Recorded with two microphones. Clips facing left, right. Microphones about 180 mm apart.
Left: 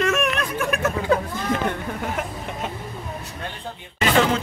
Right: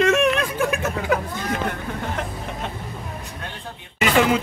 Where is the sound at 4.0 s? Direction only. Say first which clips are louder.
Right 1 dB; 10° right (ahead or behind).